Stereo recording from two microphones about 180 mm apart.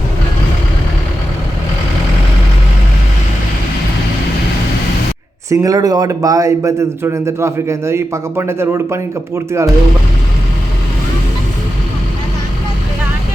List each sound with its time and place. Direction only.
5.5 s a man's voice: 20° right (ahead or behind)